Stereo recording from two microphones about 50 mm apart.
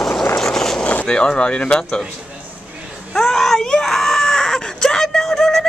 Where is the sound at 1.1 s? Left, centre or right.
Centre.